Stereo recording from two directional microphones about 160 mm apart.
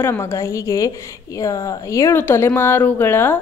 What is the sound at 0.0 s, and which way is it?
A woman's voice, 15° left (ahead or behind).